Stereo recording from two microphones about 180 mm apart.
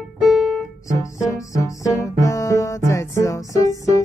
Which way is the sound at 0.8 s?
20° left (ahead or behind).